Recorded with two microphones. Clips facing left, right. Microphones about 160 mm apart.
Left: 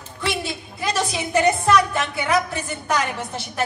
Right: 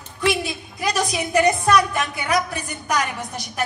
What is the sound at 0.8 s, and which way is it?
A woman's voice, 25° left (ahead or behind).